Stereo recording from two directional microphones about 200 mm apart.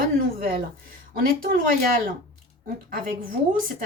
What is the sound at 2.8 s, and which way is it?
Speech, 45° right (ahead or behind).